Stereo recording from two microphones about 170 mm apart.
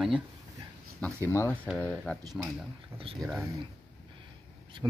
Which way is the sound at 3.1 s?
Centre (ahead or behind).